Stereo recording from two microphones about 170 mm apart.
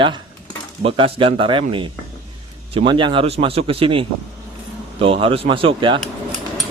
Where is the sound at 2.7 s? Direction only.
30° right (ahead or behind).